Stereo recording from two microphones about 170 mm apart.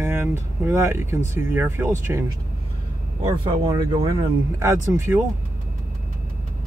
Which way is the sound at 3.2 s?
25° right (ahead or behind).